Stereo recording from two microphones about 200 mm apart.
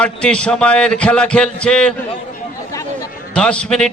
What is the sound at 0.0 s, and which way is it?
A man's voice, 5° left (ahead or behind).